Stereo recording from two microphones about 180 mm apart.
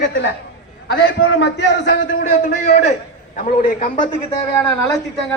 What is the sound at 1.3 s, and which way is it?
Speech, 75° left (ahead or behind).